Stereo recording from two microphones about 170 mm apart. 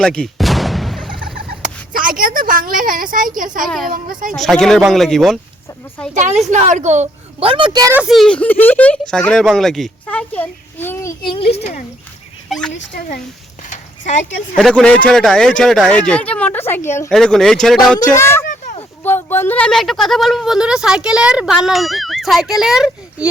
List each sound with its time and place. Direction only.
0.0 s a sound: 5° left (ahead or behind)
1.9 s a sound: 55° right (ahead or behind)
3.8 s speech: 55° right (ahead or behind)
4.3 s speech: centre (ahead or behind)
6.1 s a woman's voice: 45° right (ahead or behind); by 7.9 s 25° right (ahead or behind)
7.9 s speech: centre (ahead or behind)
11.3 s speech: 35° left (ahead or behind)
12.5 s speech: 5° left (ahead or behind)
13.7 s a sound: 45° left (ahead or behind)
14.5 s speech: 5° left (ahead or behind)
17.1 s speech: 5° left (ahead or behind)
18.1 s speech: 15° left (ahead or behind)
18.6 s a sound: 45° left (ahead or behind)
19.0 s speech: 10° left (ahead or behind); by 23.3 s 5° right (ahead or behind)